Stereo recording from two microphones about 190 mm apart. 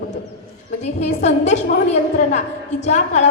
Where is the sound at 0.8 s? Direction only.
35° left (ahead or behind).